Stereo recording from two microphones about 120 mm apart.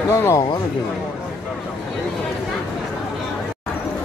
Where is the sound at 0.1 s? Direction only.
25° left (ahead or behind).